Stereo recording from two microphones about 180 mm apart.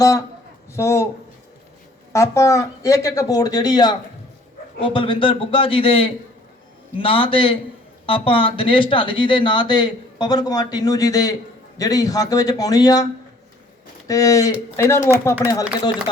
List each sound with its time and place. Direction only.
0.8 s speech: 15° left (ahead or behind)
2.1 s a man's voice: 15° left (ahead or behind)
14.1 s speech: 20° left (ahead or behind)